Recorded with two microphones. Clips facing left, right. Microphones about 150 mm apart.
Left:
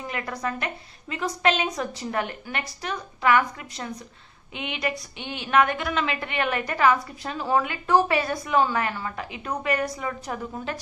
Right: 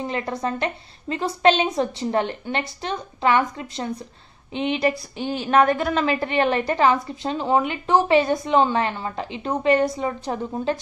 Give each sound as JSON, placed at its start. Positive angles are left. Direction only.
{"t": 0.0, "sound": "a woman's voice", "side_deg": -25}